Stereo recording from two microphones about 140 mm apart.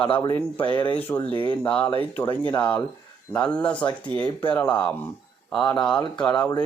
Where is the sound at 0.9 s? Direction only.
15° left (ahead or behind).